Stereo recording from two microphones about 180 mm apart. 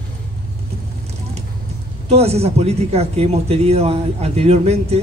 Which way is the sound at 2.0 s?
35° right (ahead or behind).